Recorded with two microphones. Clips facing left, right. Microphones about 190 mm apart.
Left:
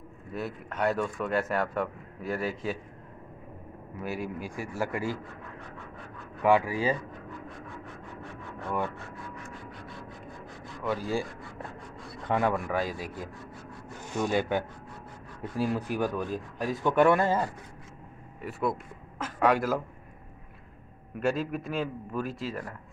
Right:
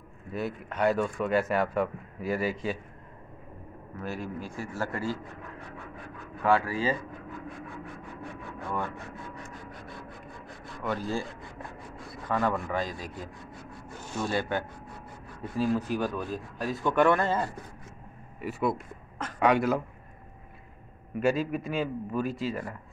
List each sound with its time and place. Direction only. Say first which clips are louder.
0.3 s a man's voice: right 2 dB; centre (ahead or behind)
4.0 s a man's voice: left 1 dB; 10° left (ahead or behind)
6.4 s a man's voice: left 2 dB; 15° left (ahead or behind)
8.2 s a sound: right 1 dB; 10° right (ahead or behind)
9.3 s a sound: even; 40° right (ahead or behind)
10.8 s a man's voice: left 1 dB; 5° left (ahead or behind)
12.3 s a man's voice: left 1 dB; 15° left (ahead or behind)
18.4 s a man's voice: right 2 dB; centre (ahead or behind)
21.2 s a man's voice: right 2 dB; centre (ahead or behind)